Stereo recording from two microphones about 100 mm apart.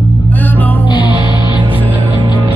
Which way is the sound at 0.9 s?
50° left (ahead or behind).